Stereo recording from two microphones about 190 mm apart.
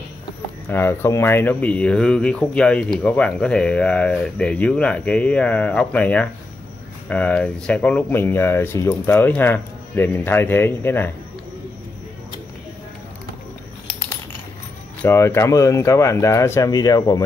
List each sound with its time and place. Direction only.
0.7 s speech: 10° left (ahead or behind)
15.0 s speech: 10° left (ahead or behind)